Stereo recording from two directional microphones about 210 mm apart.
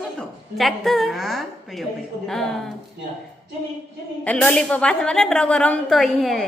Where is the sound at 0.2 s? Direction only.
Centre (ahead or behind).